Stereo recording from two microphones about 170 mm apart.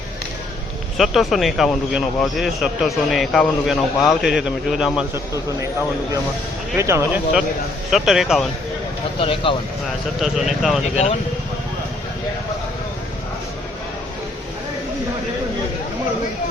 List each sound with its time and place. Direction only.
0.9 s speech: centre (ahead or behind)
5.1 s a man's voice: 20° right (ahead or behind)
6.7 s a man's voice: 15° right (ahead or behind)
7.9 s speech: centre (ahead or behind)
9.1 s speech: 30° left (ahead or behind)
10.2 s speech: centre (ahead or behind)
10.9 s speech: 40° left (ahead or behind)